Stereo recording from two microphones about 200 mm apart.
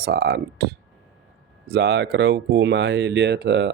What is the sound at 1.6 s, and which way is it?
Speech, 55° right (ahead or behind).